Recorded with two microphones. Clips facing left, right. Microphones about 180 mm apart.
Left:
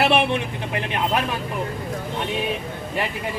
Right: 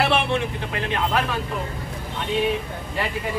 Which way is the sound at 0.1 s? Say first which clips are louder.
Left 2 dB; 15° left (ahead or behind).